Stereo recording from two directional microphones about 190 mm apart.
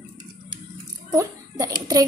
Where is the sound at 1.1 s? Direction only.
20° right (ahead or behind).